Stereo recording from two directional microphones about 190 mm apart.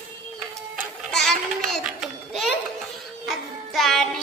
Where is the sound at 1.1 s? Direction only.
Centre (ahead or behind).